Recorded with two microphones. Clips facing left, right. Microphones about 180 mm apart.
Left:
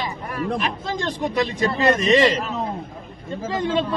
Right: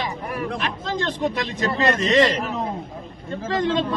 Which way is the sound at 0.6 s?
10° left (ahead or behind).